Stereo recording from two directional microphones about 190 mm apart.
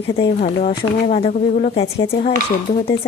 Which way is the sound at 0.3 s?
35° left (ahead or behind).